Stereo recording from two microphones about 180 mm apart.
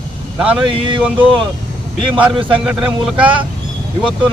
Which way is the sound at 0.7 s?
30° right (ahead or behind).